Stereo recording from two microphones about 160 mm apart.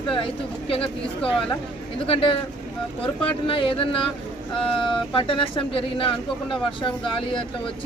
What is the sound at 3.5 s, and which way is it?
Speech, 35° left (ahead or behind).